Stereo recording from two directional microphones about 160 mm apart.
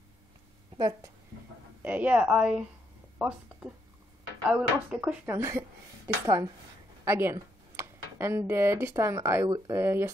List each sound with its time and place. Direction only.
0.7 s a woman's voice: 25° right (ahead or behind)
1.8 s a woman's voice: 10° right (ahead or behind)